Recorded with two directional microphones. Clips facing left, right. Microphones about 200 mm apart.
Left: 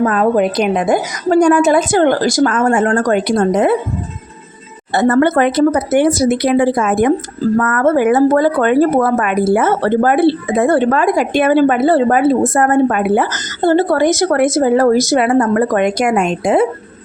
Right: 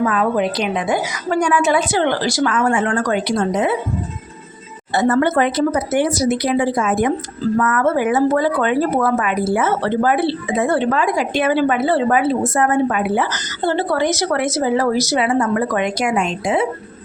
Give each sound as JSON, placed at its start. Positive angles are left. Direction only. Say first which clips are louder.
{"t": 0.0, "sound": "speech", "louder": "left 5 dB", "side_deg": 45}
{"t": 4.9, "sound": "speech", "louder": "left 4 dB", "side_deg": 55}